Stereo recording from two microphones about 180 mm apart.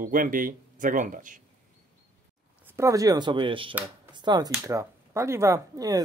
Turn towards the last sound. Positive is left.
turn(degrees=-20)  # may be behind; listen again after turning